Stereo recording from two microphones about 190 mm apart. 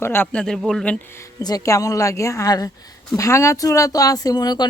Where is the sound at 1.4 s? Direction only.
20° left (ahead or behind).